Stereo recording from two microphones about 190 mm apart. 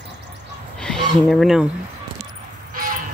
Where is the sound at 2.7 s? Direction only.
45° right (ahead or behind).